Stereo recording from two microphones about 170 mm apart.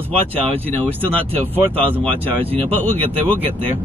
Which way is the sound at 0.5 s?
10° left (ahead or behind).